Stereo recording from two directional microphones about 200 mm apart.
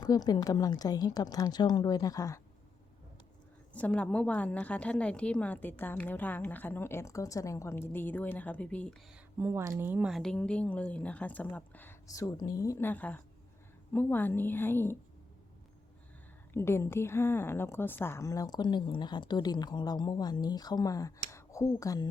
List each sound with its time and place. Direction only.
0.0 s a woman's voice: 20° left (ahead or behind)
3.7 s a woman's voice: 5° left (ahead or behind)
9.4 s a woman's voice: 10° right (ahead or behind); by 14.9 s 10° left (ahead or behind)
16.5 s a woman's voice: 10° left (ahead or behind)